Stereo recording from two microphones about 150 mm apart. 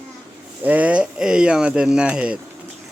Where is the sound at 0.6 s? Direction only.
10° right (ahead or behind).